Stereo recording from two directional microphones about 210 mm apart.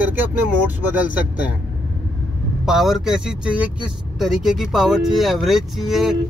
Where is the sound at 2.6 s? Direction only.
Centre (ahead or behind).